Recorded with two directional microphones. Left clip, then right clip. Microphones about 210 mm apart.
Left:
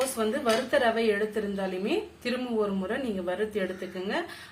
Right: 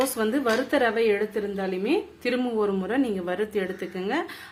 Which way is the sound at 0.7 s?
45° right (ahead or behind).